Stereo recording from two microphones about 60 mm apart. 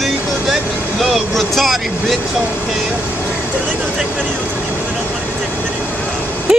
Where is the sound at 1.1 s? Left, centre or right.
Centre.